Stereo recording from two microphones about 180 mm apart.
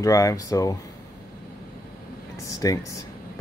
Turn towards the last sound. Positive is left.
turn(degrees=20)  # may be behind; listen again after turning